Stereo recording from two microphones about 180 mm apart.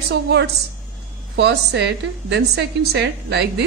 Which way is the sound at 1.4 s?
75° right (ahead or behind).